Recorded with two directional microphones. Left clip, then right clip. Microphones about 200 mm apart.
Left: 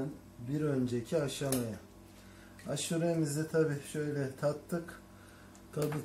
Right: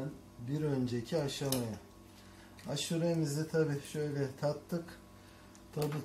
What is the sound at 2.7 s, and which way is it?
Speech, 20° right (ahead or behind).